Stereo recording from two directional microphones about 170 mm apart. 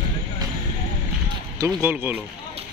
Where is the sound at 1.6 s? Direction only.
15° right (ahead or behind).